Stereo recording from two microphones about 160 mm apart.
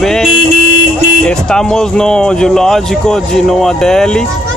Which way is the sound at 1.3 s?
5° left (ahead or behind).